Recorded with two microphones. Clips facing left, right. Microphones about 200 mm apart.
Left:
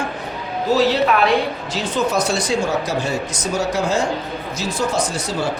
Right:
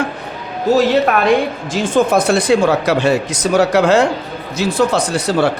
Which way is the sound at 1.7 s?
50° right (ahead or behind).